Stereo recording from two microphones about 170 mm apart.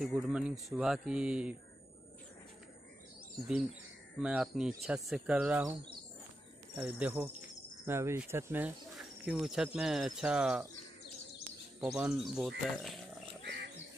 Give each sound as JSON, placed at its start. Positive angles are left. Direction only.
{"t": 0.0, "sound": "speech", "side_deg": 0}
{"t": 4.2, "sound": "speech", "side_deg": -5}
{"t": 6.8, "sound": "speech", "side_deg": -10}
{"t": 11.8, "sound": "speech", "side_deg": -5}
{"t": 13.4, "sound": "a sound", "side_deg": -80}